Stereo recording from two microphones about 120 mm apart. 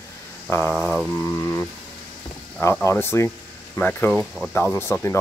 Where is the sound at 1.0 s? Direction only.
20° left (ahead or behind).